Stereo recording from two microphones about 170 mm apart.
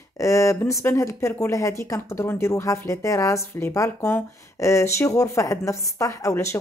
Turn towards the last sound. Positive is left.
turn(degrees=20)  # may be behind; listen again after turning